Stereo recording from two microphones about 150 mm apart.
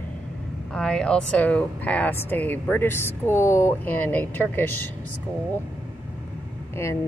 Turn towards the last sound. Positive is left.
turn(degrees=20)  # may be behind; listen again after turning